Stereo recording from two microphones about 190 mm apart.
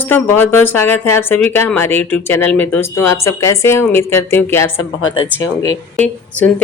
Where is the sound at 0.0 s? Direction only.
10° left (ahead or behind).